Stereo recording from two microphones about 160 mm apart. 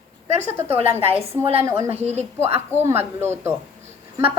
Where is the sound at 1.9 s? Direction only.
45° right (ahead or behind).